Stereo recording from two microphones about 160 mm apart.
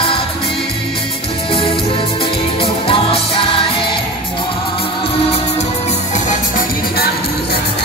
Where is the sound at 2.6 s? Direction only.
35° left (ahead or behind).